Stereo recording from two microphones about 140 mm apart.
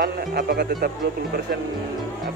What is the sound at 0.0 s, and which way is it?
Speech, 90° right.